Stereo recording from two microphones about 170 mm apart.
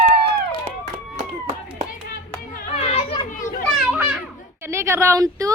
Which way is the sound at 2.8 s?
30° left (ahead or behind).